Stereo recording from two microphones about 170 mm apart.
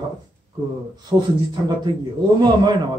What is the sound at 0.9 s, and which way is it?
Speech, 25° right (ahead or behind).